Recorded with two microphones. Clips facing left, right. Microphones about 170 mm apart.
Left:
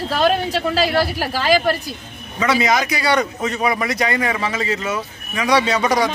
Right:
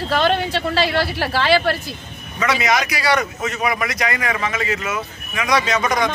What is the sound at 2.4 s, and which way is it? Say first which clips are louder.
Speech: left 2 dB; 25° left (ahead or behind).